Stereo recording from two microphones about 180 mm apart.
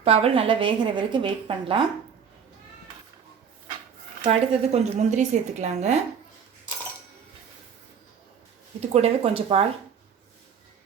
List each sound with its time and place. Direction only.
0.0 s a woman's voice: 35° right (ahead or behind)
4.2 s a woman's voice: 35° right (ahead or behind)
8.8 s a woman's voice: 35° right (ahead or behind)